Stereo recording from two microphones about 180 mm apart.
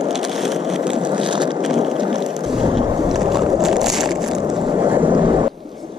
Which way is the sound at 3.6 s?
Centre (ahead or behind).